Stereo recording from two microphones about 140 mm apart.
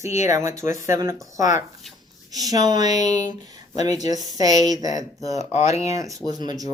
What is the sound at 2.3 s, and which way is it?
Speech, 25° right (ahead or behind).